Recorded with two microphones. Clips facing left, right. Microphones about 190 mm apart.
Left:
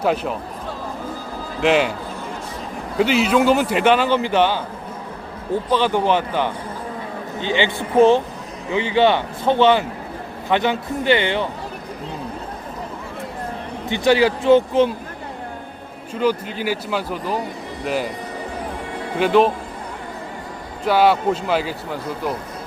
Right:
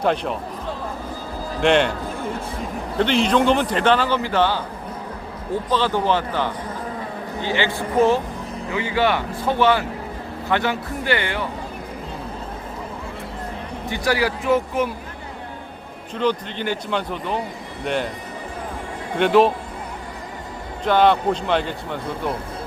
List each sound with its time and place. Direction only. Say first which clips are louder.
0.0 s a man's voice: left 1 dB; 5° left (ahead or behind)
1.6 s a man's voice: even; 5° left (ahead or behind)
3.0 s a man's voice: left 2 dB; 5° left (ahead or behind)
5.6 s a man's voice: left 2 dB; 15° left (ahead or behind)
13.9 s a man's voice: left 6 dB; 25° left (ahead or behind)
16.1 s a man's voice: left 2 dB; 5° left (ahead or behind)
19.1 s a man's voice: even; centre (ahead or behind)
20.8 s a man's voice: left 1 dB; 5° left (ahead or behind)